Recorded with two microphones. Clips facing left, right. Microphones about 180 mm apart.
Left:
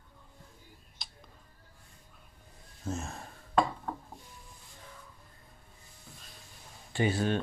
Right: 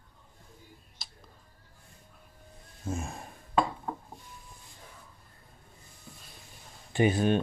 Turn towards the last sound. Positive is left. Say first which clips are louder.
# right 4 dB
turn(degrees=-15)  # may be behind; listen again after turning